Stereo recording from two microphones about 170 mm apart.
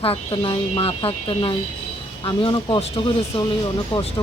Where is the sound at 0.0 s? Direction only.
35° left (ahead or behind).